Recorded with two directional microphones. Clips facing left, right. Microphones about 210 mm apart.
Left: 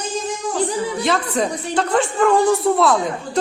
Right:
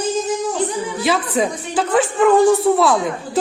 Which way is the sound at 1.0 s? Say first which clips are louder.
Right 4 dB; 5° right (ahead or behind).